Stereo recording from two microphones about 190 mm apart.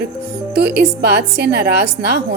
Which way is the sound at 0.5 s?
60° right (ahead or behind).